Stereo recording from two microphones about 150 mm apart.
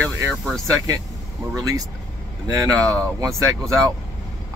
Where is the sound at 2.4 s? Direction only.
25° right (ahead or behind).